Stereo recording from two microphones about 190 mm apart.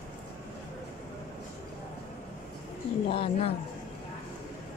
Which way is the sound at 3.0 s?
30° left (ahead or behind).